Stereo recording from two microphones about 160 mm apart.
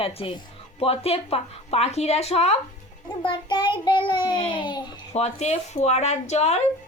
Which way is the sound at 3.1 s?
30° left (ahead or behind).